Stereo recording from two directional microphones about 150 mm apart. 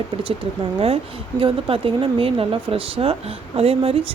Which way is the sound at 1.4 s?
35° right (ahead or behind).